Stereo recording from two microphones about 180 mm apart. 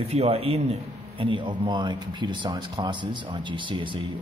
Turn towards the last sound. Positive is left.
turn(degrees=-25)  # may be behind; listen again after turning